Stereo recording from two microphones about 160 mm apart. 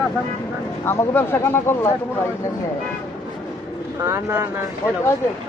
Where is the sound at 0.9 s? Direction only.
15° left (ahead or behind).